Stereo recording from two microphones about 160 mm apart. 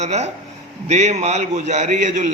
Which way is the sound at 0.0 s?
45° right (ahead or behind).